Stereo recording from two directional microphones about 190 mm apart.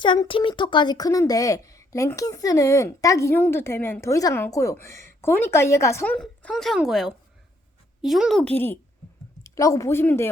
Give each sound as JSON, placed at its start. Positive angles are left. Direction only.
{"t": 0.0, "sound": "a woman's voice", "side_deg": 25}
{"t": 6.1, "sound": "a woman's voice", "side_deg": 5}